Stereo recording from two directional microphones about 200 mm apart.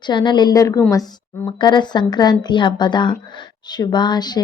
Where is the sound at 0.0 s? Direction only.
20° left (ahead or behind).